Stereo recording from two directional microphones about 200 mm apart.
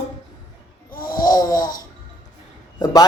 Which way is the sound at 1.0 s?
20° left (ahead or behind).